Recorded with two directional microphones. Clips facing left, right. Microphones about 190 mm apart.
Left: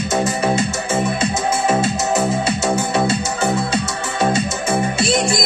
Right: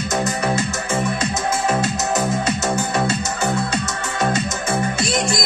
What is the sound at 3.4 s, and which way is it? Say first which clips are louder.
Music: left 1 dB; 30° left (ahead or behind).